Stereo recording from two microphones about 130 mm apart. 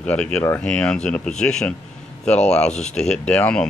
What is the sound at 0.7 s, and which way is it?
Speech, 5° left (ahead or behind).